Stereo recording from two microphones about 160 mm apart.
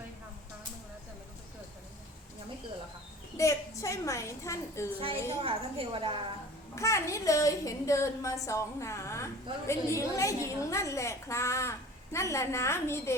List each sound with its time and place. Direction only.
3.3 s a woman's voice: 20° left (ahead or behind)
5.4 s a woman's voice: 35° right (ahead or behind)
6.7 s a woman's voice: 20° left (ahead or behind)